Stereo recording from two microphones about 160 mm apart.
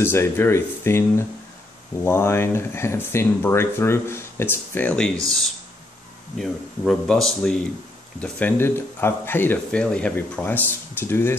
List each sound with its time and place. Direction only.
0.0 s speech: 15° left (ahead or behind)
6.3 s speech: centre (ahead or behind)